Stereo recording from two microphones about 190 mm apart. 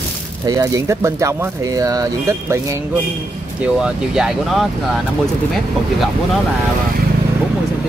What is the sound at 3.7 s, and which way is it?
Speech, 5° right (ahead or behind).